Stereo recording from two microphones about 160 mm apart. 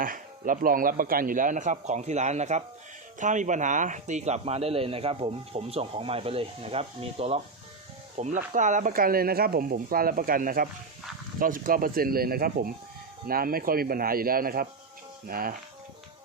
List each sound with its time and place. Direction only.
0.0 s speech: 60° right (ahead or behind)